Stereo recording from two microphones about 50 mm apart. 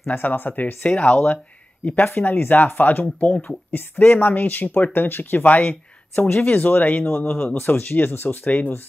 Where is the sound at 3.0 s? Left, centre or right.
Left.